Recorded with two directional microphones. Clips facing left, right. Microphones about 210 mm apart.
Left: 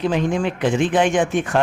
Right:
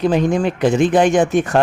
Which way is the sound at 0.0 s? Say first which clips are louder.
Right 4 dB; 40° right (ahead or behind).